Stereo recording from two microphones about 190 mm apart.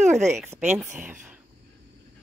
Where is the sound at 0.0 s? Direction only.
40° right (ahead or behind).